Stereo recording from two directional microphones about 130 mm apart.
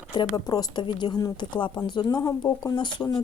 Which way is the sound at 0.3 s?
30° left (ahead or behind).